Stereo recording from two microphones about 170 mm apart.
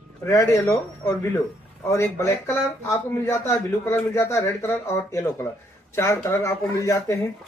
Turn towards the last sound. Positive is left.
turn(degrees=15)  # may be behind; listen again after turning